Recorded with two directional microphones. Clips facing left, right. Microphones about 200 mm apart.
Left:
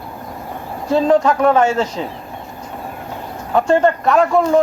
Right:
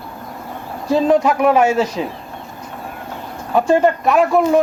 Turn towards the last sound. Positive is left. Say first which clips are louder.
# even
turn(degrees=-5)  # may be behind; listen again after turning